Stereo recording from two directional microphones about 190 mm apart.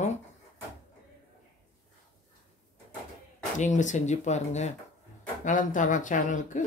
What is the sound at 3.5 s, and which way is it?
Speech, 40° left (ahead or behind).